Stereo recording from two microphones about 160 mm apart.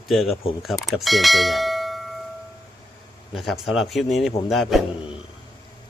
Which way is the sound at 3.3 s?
Centre (ahead or behind).